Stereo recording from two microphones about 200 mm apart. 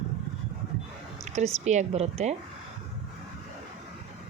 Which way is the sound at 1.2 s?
35° right (ahead or behind).